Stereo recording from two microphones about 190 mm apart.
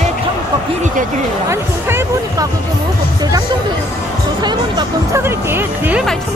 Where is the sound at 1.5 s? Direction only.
15° right (ahead or behind).